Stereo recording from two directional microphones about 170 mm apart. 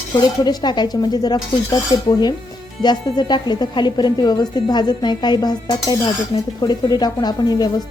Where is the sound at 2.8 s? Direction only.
25° left (ahead or behind).